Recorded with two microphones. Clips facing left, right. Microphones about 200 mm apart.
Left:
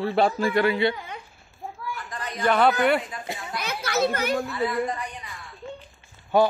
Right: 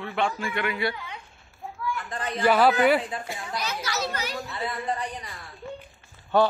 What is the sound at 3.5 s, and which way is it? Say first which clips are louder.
Children playing: left 4 dB; 55° left (ahead or behind).